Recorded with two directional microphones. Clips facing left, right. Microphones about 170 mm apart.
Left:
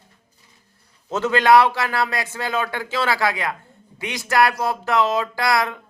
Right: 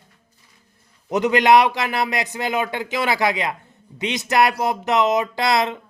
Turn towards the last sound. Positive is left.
turn(degrees=-20)  # may be behind; listen again after turning